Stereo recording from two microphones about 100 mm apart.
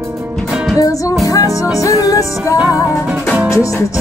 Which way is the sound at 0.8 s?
35° left (ahead or behind).